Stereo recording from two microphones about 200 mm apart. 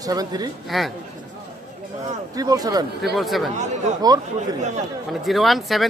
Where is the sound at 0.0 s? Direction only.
20° right (ahead or behind).